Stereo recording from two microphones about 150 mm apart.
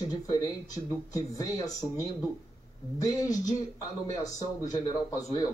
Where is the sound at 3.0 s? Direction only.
20° left (ahead or behind).